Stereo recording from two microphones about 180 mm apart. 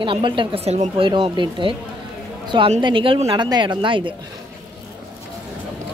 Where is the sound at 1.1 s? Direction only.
25° right (ahead or behind).